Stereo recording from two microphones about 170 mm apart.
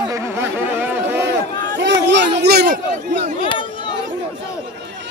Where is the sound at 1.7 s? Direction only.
90° right; by 2.6 s 75° right (ahead or behind).